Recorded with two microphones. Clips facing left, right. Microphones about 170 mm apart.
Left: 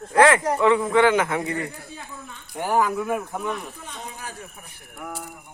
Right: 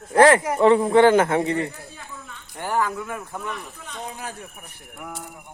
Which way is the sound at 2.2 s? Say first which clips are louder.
Left 3 dB; 15° left (ahead or behind).